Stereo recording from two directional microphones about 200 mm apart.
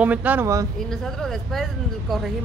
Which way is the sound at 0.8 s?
Centre (ahead or behind).